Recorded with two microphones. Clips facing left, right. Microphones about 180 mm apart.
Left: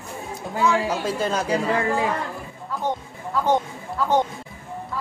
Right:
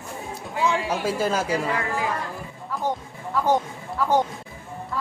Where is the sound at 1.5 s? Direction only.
30° left (ahead or behind).